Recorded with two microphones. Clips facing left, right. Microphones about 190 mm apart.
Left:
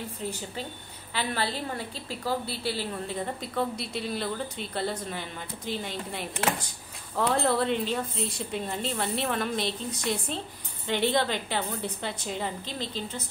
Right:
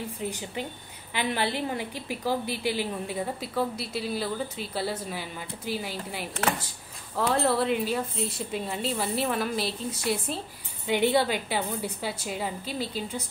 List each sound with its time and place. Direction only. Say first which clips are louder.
0.3 s a woman's voice: right 2 dB; 15° right (ahead or behind)